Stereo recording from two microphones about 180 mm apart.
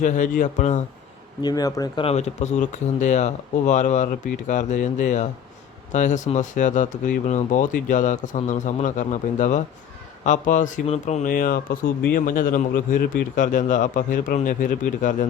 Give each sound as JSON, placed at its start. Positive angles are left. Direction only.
{"t": 0.0, "sound": "speech", "side_deg": 45}
{"t": 1.4, "sound": "speech", "side_deg": 20}
{"t": 2.0, "sound": "speech", "side_deg": 35}